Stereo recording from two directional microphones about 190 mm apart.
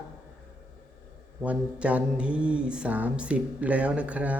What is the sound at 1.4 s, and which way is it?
Mantra, 5° right (ahead or behind).